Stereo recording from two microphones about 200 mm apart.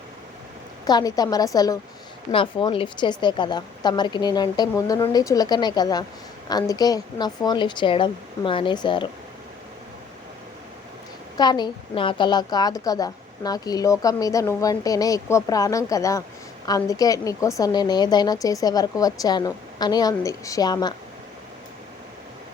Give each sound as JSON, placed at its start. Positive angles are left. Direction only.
{"t": 0.9, "sound": "a woman's voice", "side_deg": 20}
{"t": 11.3, "sound": "a woman's voice", "side_deg": 20}